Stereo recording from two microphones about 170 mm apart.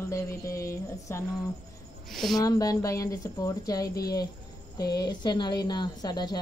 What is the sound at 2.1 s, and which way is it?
Speech, centre (ahead or behind).